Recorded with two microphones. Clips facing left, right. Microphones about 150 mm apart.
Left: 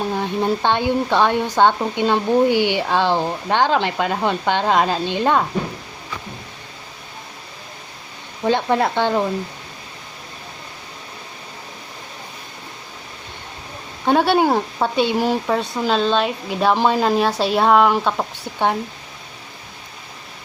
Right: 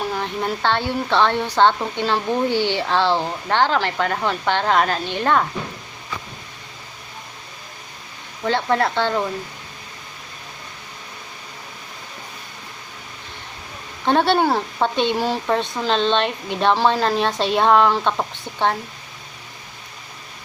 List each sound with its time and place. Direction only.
0.1 s speech: 20° left (ahead or behind)
8.4 s speech: 15° left (ahead or behind)
14.0 s a woman's voice: 10° left (ahead or behind)